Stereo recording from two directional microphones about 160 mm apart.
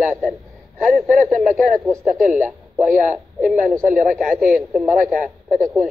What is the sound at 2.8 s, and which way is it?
Speech, 50° right (ahead or behind).